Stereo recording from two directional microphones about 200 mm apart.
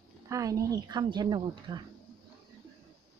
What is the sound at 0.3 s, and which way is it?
Speech, 15° right (ahead or behind).